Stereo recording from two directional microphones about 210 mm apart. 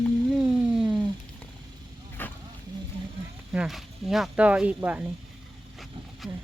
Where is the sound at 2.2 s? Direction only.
10° left (ahead or behind).